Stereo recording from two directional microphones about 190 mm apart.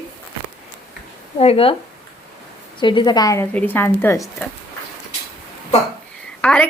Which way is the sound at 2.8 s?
25° left (ahead or behind).